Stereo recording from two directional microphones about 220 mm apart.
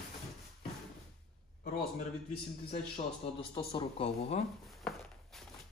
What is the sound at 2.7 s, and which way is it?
Speech, 25° left (ahead or behind).